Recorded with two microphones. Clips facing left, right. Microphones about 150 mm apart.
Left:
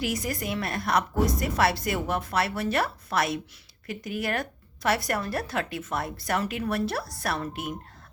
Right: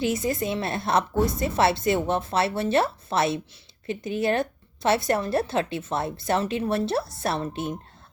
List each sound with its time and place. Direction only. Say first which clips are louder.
0.0 s a woman's voice: right 5 dB; 25° right (ahead or behind)